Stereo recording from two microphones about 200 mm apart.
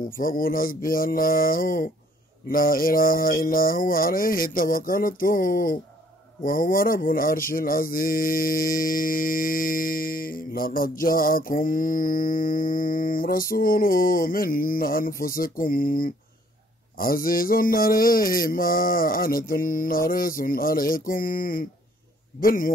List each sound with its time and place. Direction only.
0.2 s mantra: 45° left (ahead or behind)